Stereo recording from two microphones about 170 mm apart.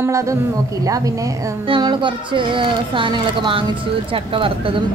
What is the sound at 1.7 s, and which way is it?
Speech, 25° right (ahead or behind).